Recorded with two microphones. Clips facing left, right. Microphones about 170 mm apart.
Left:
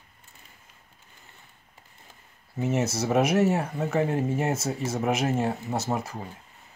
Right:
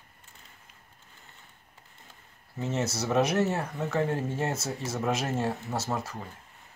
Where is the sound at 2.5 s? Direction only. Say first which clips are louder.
Left 4 dB; 15° left (ahead or behind).